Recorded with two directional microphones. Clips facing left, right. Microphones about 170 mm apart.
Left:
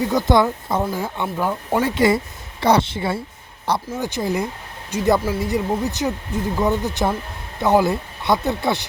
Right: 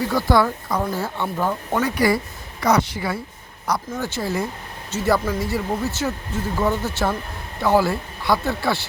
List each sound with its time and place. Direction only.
0.0 s speech: 20° left (ahead or behind)
1.7 s speech: 25° left (ahead or behind)